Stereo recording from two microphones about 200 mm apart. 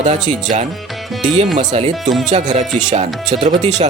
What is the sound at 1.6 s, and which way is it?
Speech, 35° right (ahead or behind).